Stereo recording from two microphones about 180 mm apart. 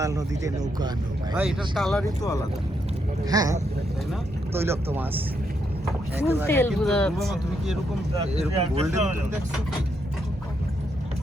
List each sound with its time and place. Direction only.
0.0 s speech: 20° right (ahead or behind)
1.4 s speech: centre (ahead or behind)
2.2 s speech: 20° left (ahead or behind)
3.2 s speech: 20° right (ahead or behind)
6.5 s speech: 10° left (ahead or behind)
8.5 s speech: 35° right (ahead or behind)